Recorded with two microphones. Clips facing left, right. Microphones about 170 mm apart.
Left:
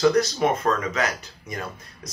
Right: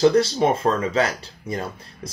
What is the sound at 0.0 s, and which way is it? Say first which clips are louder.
Speech: right 3 dB; 30° right (ahead or behind).